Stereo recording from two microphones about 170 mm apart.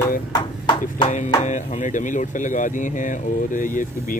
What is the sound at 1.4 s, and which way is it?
Speech, 50° left (ahead or behind).